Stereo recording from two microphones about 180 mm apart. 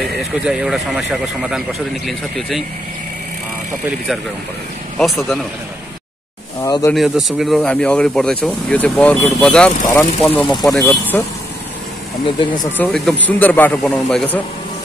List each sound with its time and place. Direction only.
0.0 s speech: 5° right (ahead or behind)
4.9 s speech: centre (ahead or behind)
6.6 s a man's voice: 20° left (ahead or behind)
6.9 s speech: centre (ahead or behind)
12.7 s a man's voice: 5° left (ahead or behind)